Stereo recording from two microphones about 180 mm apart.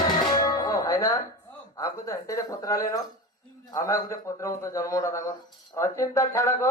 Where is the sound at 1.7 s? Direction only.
15° left (ahead or behind).